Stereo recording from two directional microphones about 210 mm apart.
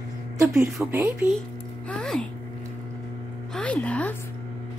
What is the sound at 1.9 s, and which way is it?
Speech, 5° left (ahead or behind).